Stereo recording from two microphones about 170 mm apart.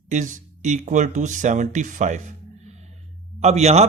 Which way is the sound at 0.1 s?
50° right (ahead or behind).